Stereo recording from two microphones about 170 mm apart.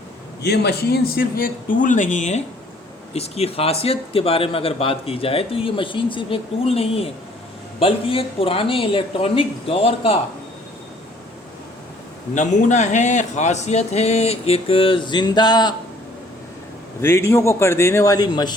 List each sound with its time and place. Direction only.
0.4 s speech: 75° left (ahead or behind); by 10.2 s 35° left (ahead or behind)
12.3 s speech: 45° left (ahead or behind); by 15.7 s 25° left (ahead or behind)
17.0 s speech: 15° left (ahead or behind)